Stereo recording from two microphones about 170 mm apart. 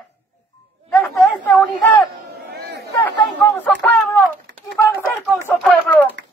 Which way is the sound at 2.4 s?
75° right (ahead or behind).